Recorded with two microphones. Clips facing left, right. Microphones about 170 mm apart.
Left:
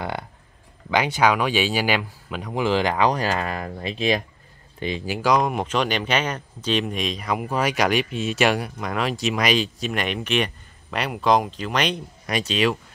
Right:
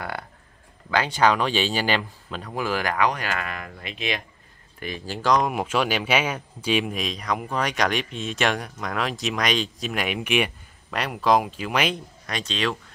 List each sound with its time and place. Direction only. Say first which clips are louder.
0.8 s speech: left 1 dB; 15° left (ahead or behind); by 4.2 s 35° left (ahead or behind)
4.7 s speech: left 5 dB; 20° left (ahead or behind); by 5.5 s 5° left (ahead or behind)
5.5 s speech: left 1 dB; 5° right (ahead or behind)
12.3 s speech: left 5 dB; 10° left (ahead or behind)